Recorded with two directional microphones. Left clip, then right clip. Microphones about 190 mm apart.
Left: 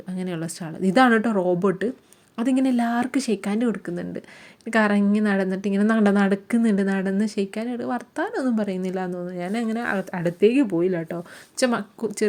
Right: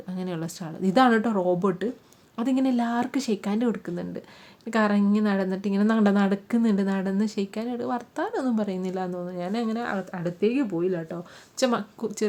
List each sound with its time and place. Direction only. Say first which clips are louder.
0.1 s speech: left 3 dB; 10° left (ahead or behind)